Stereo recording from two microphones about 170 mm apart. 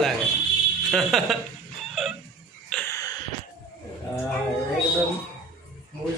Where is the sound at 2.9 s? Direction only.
20° left (ahead or behind).